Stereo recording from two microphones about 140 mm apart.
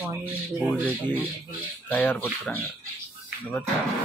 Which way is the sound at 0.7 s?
10° left (ahead or behind).